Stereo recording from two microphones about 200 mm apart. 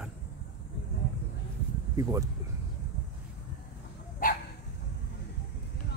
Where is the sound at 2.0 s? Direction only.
15° right (ahead or behind).